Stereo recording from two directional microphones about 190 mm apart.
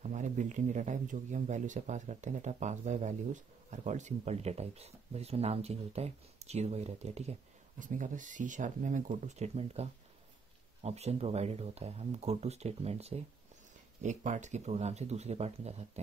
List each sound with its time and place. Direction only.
0.0 s speech: 40° right (ahead or behind)